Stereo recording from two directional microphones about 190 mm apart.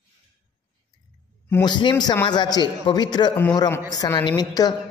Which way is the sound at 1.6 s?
25° left (ahead or behind).